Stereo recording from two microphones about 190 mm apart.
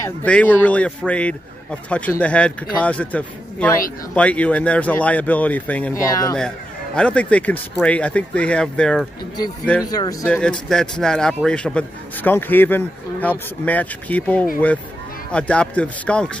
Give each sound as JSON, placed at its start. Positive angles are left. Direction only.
{"t": 0.2, "sound": "speech", "side_deg": 5}
{"t": 6.0, "sound": "speech", "side_deg": 20}
{"t": 7.0, "sound": "speech", "side_deg": 5}
{"t": 9.8, "sound": "speech", "side_deg": 20}
{"t": 10.2, "sound": "speech", "side_deg": 5}